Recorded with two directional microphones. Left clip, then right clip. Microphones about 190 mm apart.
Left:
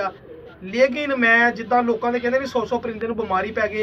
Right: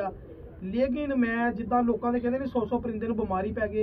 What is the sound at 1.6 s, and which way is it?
A man's voice, 40° left (ahead or behind).